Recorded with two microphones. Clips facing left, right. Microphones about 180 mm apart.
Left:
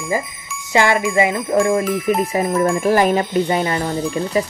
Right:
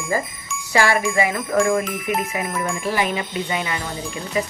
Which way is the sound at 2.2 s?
35° left (ahead or behind).